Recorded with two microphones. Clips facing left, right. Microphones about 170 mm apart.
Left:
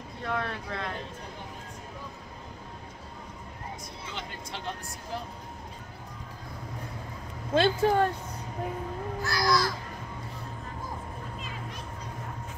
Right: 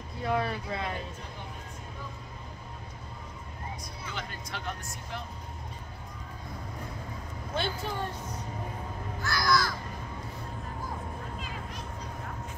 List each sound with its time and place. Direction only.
0.2 s speech: 5° right (ahead or behind)
4.0 s speech: 25° left (ahead or behind)
7.5 s speech: 85° left
9.2 s speech: 30° left (ahead or behind)